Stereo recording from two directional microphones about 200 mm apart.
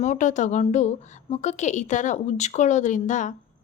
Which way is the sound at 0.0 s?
35° left (ahead or behind).